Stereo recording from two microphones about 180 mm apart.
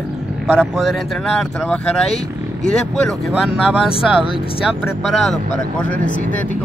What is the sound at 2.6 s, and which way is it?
Speech, 5° left (ahead or behind).